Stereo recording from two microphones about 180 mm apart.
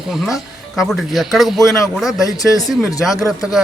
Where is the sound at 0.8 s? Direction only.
Centre (ahead or behind).